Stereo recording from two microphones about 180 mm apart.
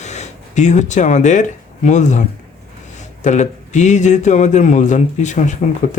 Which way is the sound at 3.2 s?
40° left (ahead or behind).